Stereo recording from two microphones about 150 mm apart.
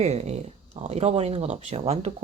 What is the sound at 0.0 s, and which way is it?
Speech, 45° right (ahead or behind).